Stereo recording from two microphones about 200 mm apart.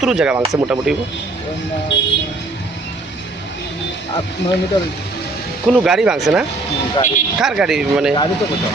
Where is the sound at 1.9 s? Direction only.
60° left (ahead or behind).